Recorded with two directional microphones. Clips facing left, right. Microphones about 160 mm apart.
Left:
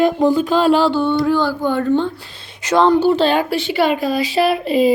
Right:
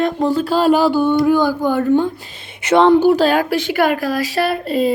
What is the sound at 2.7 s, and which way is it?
Speech, 25° right (ahead or behind).